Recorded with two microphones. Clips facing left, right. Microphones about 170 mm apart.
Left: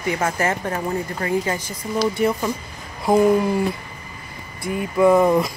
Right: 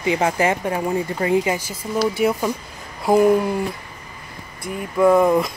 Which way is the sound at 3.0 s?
5° right (ahead or behind).